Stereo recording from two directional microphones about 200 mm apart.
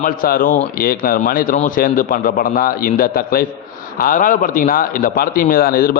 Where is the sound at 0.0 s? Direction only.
45° left (ahead or behind).